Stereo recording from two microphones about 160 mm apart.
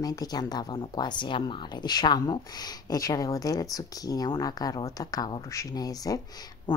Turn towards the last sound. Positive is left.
turn(degrees=25)  # may be behind; listen again after turning